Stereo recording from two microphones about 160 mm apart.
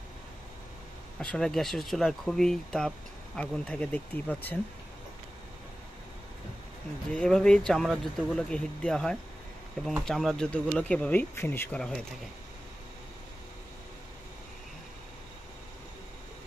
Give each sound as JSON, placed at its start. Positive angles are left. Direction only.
{"t": 1.2, "sound": "speech", "side_deg": 5}
{"t": 7.2, "sound": "speech", "side_deg": 5}